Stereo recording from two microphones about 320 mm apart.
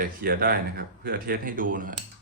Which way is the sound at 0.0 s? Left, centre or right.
Right.